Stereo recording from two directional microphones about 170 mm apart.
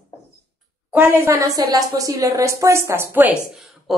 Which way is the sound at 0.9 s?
10° right (ahead or behind).